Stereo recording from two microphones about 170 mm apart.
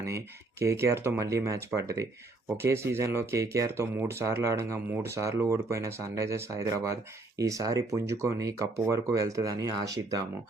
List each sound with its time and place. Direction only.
0.6 s speech: 15° right (ahead or behind)